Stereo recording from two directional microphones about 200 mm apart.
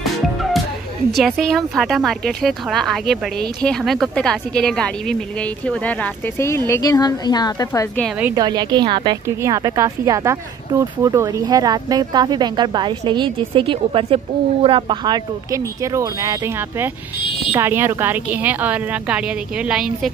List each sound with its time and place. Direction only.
1.1 s a woman's voice: centre (ahead or behind); by 7.9 s 15° left (ahead or behind)
8.4 s speech: 20° right (ahead or behind); by 20.1 s centre (ahead or behind)